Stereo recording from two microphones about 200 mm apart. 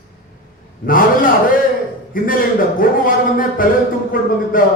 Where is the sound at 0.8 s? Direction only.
45° left (ahead or behind).